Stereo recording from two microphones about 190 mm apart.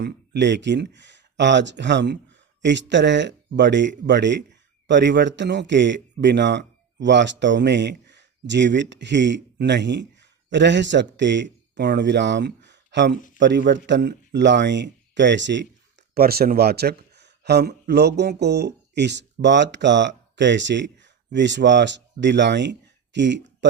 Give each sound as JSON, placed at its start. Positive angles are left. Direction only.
{"t": 0.0, "sound": "a man's voice", "side_deg": -65}
{"t": 16.1, "sound": "speech", "side_deg": -55}